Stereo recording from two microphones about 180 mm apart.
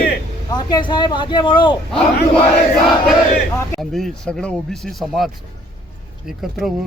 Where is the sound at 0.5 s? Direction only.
25° left (ahead or behind).